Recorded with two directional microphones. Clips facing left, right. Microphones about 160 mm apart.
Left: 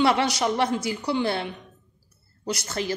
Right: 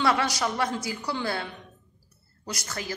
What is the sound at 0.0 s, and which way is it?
A woman's voice, 25° left (ahead or behind).